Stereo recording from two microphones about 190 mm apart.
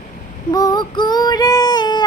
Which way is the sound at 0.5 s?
20° left (ahead or behind).